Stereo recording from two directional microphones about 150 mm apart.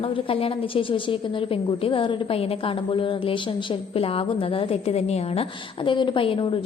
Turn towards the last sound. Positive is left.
turn(degrees=35)  # may be behind; listen again after turning